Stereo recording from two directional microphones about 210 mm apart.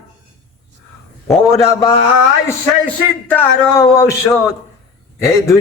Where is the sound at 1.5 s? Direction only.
15° left (ahead or behind).